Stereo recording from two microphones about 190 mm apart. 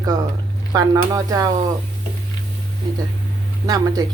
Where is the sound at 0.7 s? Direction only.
20° right (ahead or behind).